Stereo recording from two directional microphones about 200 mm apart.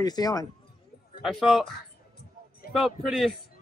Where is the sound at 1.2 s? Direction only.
Centre (ahead or behind).